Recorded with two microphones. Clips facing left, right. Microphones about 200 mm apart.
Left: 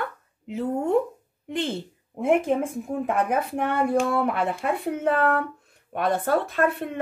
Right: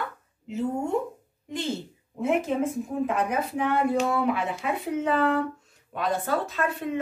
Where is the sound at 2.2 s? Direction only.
55° left (ahead or behind).